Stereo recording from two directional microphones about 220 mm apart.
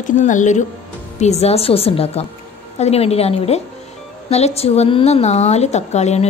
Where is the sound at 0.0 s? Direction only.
35° left (ahead or behind).